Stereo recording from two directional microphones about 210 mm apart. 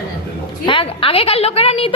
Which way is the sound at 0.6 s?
25° left (ahead or behind).